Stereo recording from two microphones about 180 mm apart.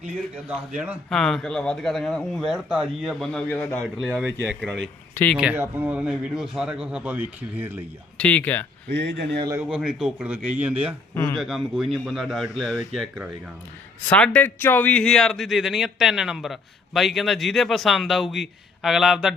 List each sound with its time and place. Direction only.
1.1 s a man's voice: centre (ahead or behind)
5.4 s a man's voice: 10° right (ahead or behind)
8.2 s speech: 10° left (ahead or behind)
8.9 s speech: 75° right (ahead or behind)
9.6 s a man's voice: 5° right (ahead or behind)
11.1 s speech: 15° left (ahead or behind)
11.3 s a man's voice: centre (ahead or behind)
14.1 s a man's voice: 10° left (ahead or behind)